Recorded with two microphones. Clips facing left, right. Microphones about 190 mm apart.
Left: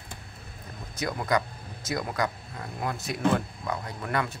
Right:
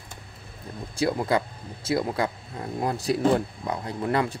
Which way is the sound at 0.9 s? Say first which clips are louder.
Right 4 dB; 30° right (ahead or behind).